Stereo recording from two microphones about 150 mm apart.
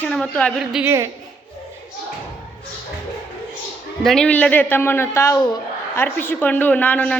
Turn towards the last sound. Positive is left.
turn(degrees=10)  # may be behind; listen again after turning